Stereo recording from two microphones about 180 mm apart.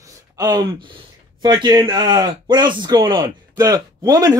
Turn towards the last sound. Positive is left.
turn(degrees=-20)  # may be behind; listen again after turning